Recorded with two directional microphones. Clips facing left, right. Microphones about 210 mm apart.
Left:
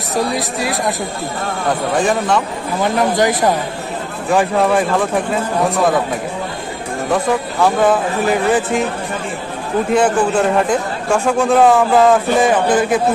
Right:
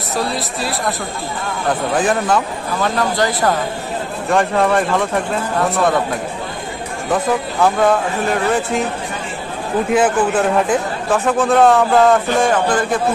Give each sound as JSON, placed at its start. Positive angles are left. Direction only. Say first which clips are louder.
{"t": 0.1, "sound": "speech", "louder": "left 3 dB", "side_deg": 15}
{"t": 2.0, "sound": "a man's voice", "louder": "even", "side_deg": -5}
{"t": 2.8, "sound": "speech", "louder": "left 3 dB", "side_deg": 20}
{"t": 4.3, "sound": "a man's voice", "louder": "left 1 dB", "side_deg": 0}
{"t": 7.6, "sound": "a man's voice", "louder": "left 1 dB", "side_deg": 0}
{"t": 9.9, "sound": "a man's voice", "louder": "left 1 dB", "side_deg": -5}